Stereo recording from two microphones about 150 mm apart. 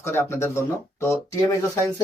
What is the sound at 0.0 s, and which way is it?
Speech, 15° left (ahead or behind).